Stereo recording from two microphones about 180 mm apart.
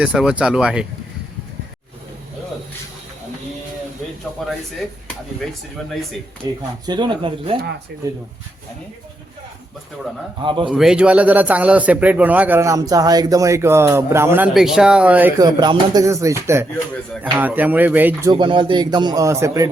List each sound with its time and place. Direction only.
0.0 s speech: 5° right (ahead or behind)
6.4 s a man's voice: 20° right (ahead or behind)
10.4 s a man's voice: 25° right (ahead or behind)
10.7 s a man's voice: 5° right (ahead or behind)
18.3 s a man's voice: 25° right (ahead or behind)